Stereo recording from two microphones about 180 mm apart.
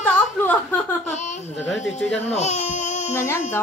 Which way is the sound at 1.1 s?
40° left (ahead or behind).